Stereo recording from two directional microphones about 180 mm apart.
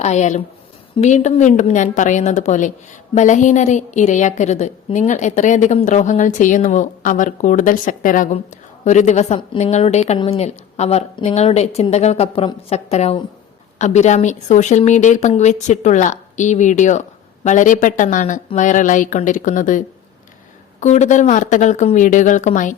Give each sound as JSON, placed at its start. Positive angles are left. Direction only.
{"t": 0.0, "sound": "a woman's voice", "side_deg": 40}
{"t": 20.8, "sound": "speech", "side_deg": 40}